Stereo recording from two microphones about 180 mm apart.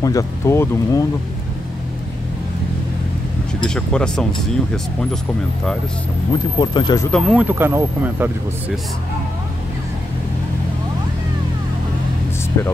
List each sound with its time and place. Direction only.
0.0 s speech: 20° left (ahead or behind)
3.6 s speech: 5° left (ahead or behind)
6.6 s speech: 25° left (ahead or behind)
7.1 s speech: centre (ahead or behind)
7.4 s speech: 10° right (ahead or behind)
12.6 s speech: 15° left (ahead or behind)